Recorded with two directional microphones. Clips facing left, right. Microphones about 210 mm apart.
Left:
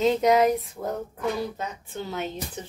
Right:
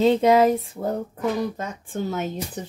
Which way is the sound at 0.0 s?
30° right (ahead or behind).